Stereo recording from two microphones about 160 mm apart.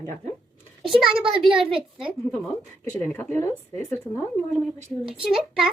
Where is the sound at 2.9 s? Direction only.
5° left (ahead or behind).